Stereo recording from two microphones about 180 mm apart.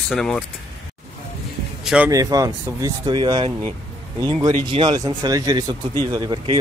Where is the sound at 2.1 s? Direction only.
20° right (ahead or behind).